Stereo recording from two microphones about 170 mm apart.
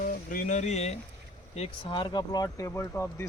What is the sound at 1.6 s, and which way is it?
Speech, 30° left (ahead or behind).